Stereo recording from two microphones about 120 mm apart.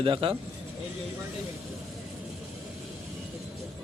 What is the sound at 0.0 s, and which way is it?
Speech, 45° right (ahead or behind).